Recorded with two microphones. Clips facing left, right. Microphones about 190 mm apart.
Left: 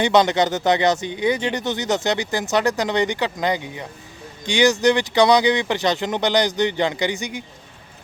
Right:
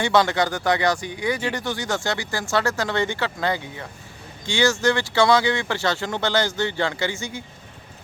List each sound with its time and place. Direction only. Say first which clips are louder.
0.0 s speech: left 3 dB; 20° left (ahead or behind)